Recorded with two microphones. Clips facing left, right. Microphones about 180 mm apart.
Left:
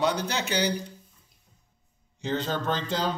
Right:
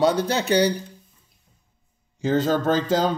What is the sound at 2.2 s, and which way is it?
Speech, 45° right (ahead or behind).